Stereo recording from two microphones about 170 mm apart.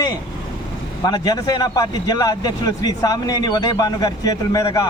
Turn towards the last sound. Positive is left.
turn(degrees=20)  # may be behind; listen again after turning